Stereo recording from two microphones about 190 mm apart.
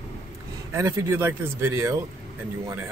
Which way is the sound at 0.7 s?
15° right (ahead or behind).